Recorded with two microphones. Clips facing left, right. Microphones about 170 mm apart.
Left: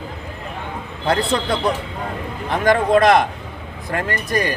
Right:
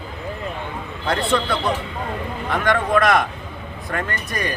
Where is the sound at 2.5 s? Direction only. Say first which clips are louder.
Left 4 dB; 35° left (ahead or behind).